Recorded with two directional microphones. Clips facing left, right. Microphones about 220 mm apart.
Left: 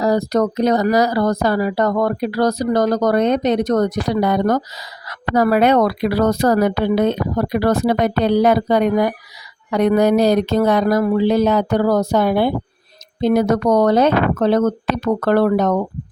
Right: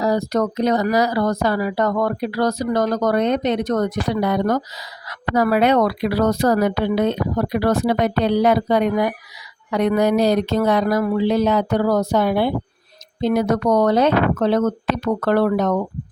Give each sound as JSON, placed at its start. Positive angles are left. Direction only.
{"t": 0.0, "sound": "speech", "side_deg": 40}